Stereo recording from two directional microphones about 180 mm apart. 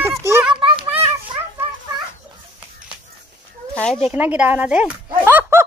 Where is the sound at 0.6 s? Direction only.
30° right (ahead or behind).